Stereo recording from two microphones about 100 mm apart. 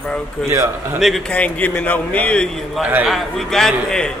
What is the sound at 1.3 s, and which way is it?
Speech, 15° left (ahead or behind).